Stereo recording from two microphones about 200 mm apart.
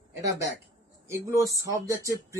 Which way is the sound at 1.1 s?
15° right (ahead or behind).